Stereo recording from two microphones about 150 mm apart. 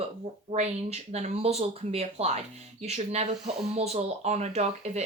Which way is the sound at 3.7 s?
45° right (ahead or behind).